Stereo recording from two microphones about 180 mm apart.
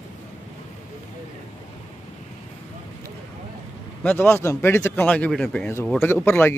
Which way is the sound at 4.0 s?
10° left (ahead or behind).